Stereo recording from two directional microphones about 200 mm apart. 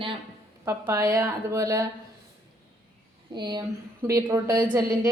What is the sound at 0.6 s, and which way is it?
Speech, 15° right (ahead or behind).